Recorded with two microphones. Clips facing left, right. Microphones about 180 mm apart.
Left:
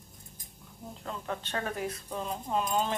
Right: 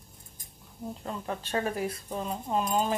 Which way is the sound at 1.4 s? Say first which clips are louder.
Right 6 dB; 10° right (ahead or behind).